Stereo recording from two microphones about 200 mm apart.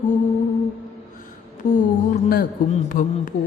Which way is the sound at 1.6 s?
45° left (ahead or behind).